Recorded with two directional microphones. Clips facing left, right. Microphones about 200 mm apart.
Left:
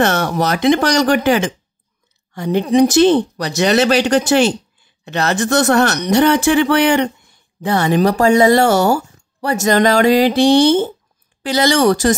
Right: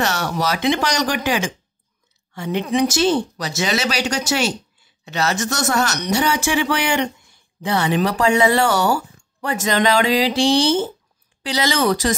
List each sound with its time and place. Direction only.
0.0 s speech: 55° left (ahead or behind)
2.3 s speech: 40° left (ahead or behind)
2.9 s speech: 55° left (ahead or behind)
7.6 s speech: 45° left (ahead or behind)